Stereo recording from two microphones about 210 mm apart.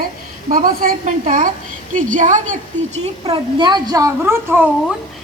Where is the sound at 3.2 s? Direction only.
25° right (ahead or behind).